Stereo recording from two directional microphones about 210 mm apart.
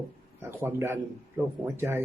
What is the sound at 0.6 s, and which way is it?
A man's voice, 10° right (ahead or behind).